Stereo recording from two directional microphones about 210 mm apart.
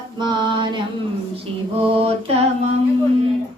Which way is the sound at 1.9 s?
30° right (ahead or behind).